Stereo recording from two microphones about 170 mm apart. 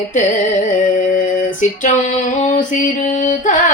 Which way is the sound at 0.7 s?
50° left (ahead or behind).